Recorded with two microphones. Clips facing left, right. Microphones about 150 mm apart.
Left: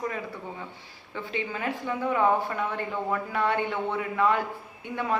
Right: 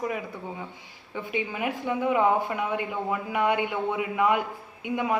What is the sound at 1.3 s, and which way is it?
A woman's voice, 15° right (ahead or behind).